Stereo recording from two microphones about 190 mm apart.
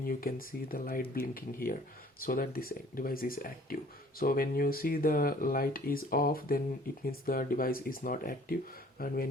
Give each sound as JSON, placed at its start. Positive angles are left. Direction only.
{"t": 0.0, "sound": "speech", "side_deg": 50}